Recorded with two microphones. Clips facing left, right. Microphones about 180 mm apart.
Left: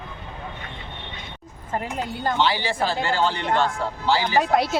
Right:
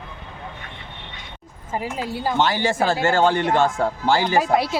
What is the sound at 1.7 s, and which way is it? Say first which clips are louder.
Speech: right 1 dB; 5° right (ahead or behind).